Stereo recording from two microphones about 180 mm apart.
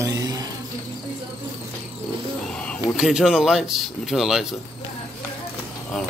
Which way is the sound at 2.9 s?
5° right (ahead or behind).